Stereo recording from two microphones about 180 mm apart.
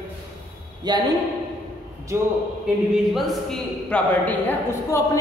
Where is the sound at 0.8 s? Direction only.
25° right (ahead or behind).